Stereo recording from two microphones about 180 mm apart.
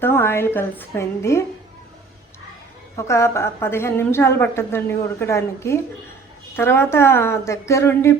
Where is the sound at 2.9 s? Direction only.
15° left (ahead or behind).